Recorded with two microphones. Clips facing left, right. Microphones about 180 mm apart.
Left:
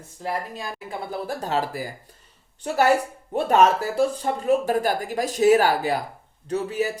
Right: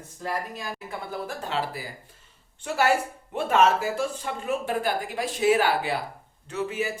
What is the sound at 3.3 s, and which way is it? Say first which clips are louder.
Speech: left 3 dB; 40° left (ahead or behind).